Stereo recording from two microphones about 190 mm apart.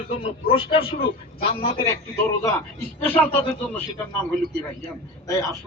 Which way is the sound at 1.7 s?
20° left (ahead or behind).